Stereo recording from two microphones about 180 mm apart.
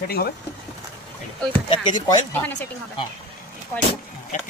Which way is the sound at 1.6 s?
25° left (ahead or behind).